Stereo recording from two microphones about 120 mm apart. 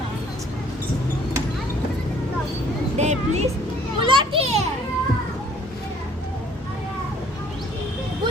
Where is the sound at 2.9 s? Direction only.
70° right (ahead or behind).